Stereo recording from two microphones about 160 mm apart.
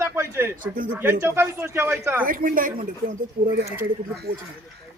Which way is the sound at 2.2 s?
60° right (ahead or behind).